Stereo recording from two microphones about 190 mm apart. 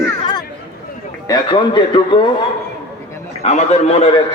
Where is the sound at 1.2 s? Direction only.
25° left (ahead or behind).